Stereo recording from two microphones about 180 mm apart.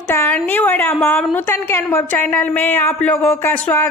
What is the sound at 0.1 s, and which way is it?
A woman's voice, 10° left (ahead or behind).